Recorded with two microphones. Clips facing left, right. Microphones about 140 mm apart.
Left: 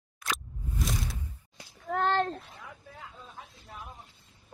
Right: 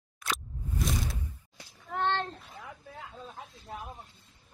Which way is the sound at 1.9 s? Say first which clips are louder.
Left 3 dB; 40° left (ahead or behind).